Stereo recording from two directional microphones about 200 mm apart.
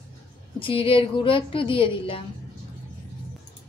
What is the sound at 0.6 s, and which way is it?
A woman's voice, 25° left (ahead or behind).